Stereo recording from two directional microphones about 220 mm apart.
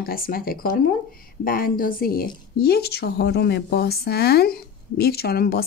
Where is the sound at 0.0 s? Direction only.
40° left (ahead or behind).